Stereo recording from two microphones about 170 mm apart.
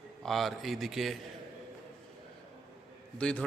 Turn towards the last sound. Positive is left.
turn(degrees=5)  # may be behind; listen again after turning